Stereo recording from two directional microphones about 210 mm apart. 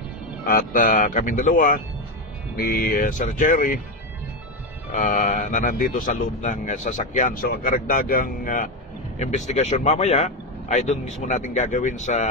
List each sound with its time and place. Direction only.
0.5 s a man's voice: 45° left (ahead or behind)
4.9 s a man's voice: 40° left (ahead or behind)